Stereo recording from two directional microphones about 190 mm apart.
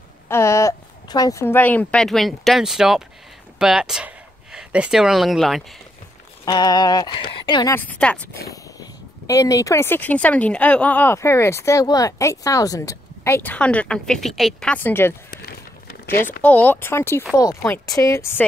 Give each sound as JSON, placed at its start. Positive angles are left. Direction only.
{"t": 0.3, "sound": "speech", "side_deg": 15}
{"t": 6.4, "sound": "speech", "side_deg": 20}
{"t": 7.7, "sound": "speech", "side_deg": 10}
{"t": 9.3, "sound": "speech", "side_deg": 15}
{"t": 15.9, "sound": "a sound", "side_deg": 50}
{"t": 16.4, "sound": "speech", "side_deg": 10}